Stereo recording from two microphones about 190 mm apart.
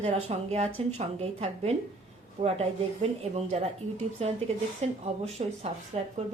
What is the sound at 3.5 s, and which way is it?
Speech, 35° right (ahead or behind).